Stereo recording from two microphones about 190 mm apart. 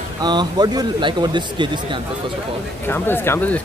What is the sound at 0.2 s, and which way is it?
Speech, 20° right (ahead or behind).